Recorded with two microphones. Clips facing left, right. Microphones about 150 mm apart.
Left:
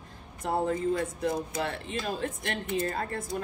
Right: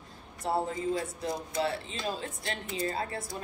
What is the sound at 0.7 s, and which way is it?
Speech, 55° left (ahead or behind).